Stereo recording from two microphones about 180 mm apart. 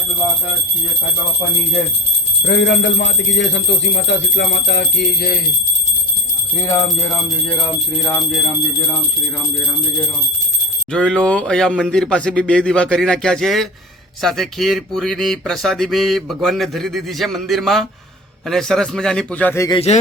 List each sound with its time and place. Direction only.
2.4 s speech: 75° left (ahead or behind)
4.0 s speech: 70° left (ahead or behind)
8.0 s speech: centre (ahead or behind)
10.9 s speech: 5° left (ahead or behind)